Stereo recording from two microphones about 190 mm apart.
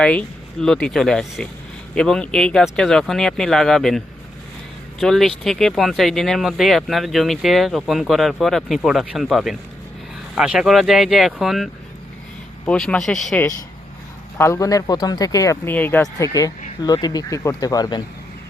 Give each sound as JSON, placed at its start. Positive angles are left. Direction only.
{"t": 0.0, "sound": "speech", "side_deg": 5}
{"t": 14.3, "sound": "speech", "side_deg": 15}